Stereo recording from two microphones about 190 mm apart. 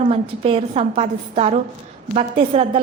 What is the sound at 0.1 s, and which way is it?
A woman's voice, 30° right (ahead or behind).